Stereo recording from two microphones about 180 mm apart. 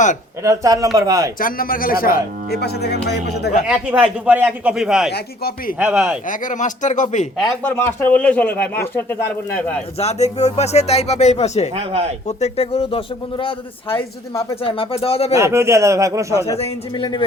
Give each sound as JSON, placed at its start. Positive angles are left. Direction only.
{"t": 0.4, "sound": "speech", "side_deg": -15}
{"t": 1.4, "sound": "speech", "side_deg": 50}
{"t": 3.7, "sound": "speech", "side_deg": -10}
{"t": 5.1, "sound": "speech", "side_deg": 60}
{"t": 5.8, "sound": "speech", "side_deg": -5}
{"t": 6.2, "sound": "a man's voice", "side_deg": 45}
{"t": 7.6, "sound": "speech", "side_deg": 15}
{"t": 10.0, "sound": "speech", "side_deg": 35}
{"t": 11.7, "sound": "speech", "side_deg": -35}
{"t": 12.4, "sound": "speech", "side_deg": 35}
{"t": 14.6, "sound": "speech", "side_deg": 30}
{"t": 15.4, "sound": "speech", "side_deg": -15}
{"t": 16.6, "sound": "speech", "side_deg": 25}